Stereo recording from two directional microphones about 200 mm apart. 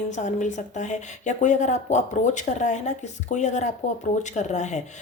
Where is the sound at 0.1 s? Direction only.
35° left (ahead or behind).